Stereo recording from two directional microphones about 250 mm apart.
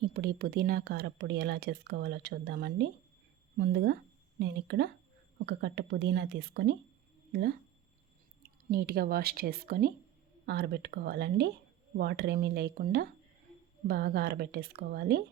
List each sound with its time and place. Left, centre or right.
0.0 s speech: right
8.7 s speech: right